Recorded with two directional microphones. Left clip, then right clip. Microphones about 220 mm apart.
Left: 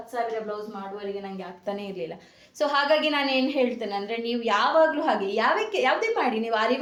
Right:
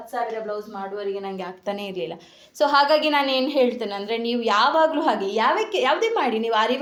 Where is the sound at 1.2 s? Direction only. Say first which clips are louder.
Right 4 dB; 45° right (ahead or behind).